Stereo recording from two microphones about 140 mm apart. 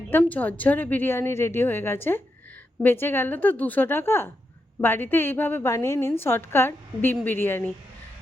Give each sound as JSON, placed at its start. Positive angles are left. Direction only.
{"t": 0.1, "sound": "a woman's voice", "side_deg": 10}